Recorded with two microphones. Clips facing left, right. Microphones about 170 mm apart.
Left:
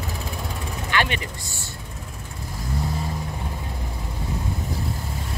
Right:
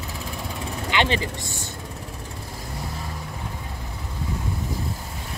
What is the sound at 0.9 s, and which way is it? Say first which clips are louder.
Speech: right 2 dB; 25° right (ahead or behind).